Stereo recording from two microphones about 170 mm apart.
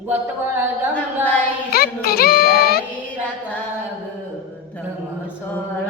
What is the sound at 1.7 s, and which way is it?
Music, 65° left (ahead or behind).